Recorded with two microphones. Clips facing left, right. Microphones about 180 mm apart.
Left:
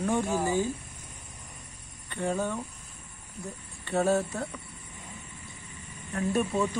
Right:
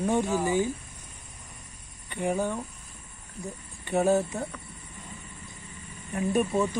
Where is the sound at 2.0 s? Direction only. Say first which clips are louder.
Right 2 dB; 15° right (ahead or behind).